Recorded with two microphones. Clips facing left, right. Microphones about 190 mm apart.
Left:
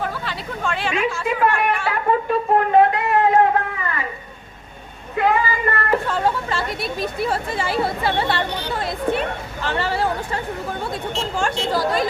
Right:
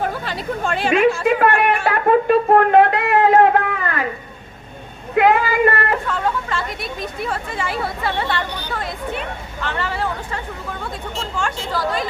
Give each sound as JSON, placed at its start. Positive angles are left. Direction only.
{"t": 0.0, "sound": "speech", "side_deg": -45}
{"t": 1.2, "sound": "a sound", "side_deg": -60}
{"t": 5.1, "sound": "female singing", "side_deg": -80}
{"t": 6.1, "sound": "speech", "side_deg": 35}
{"t": 11.7, "sound": "speech", "side_deg": 40}